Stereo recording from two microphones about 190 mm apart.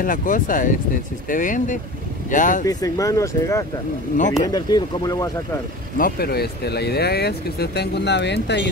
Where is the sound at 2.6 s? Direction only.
20° left (ahead or behind).